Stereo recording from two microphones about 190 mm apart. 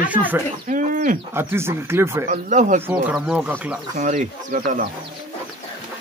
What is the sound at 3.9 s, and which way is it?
Speech, 40° right (ahead or behind).